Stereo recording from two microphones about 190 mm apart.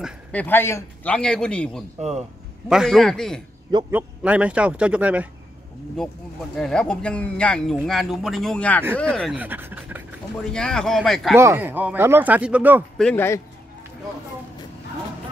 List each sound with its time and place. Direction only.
0.3 s a man's voice: 10° left (ahead or behind)
2.0 s speech: 35° right (ahead or behind)
2.7 s speech: centre (ahead or behind)
6.5 s speech: 5° left (ahead or behind)
9.3 s speech: 10° right (ahead or behind)
10.5 s speech: 5° left (ahead or behind)
11.3 s speech: 10° right (ahead or behind)
12.9 s a man's voice: 5° left (ahead or behind)